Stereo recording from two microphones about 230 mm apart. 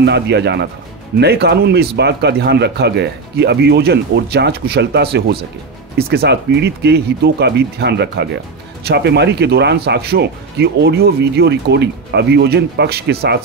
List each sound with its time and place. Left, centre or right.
0.0 s speech: right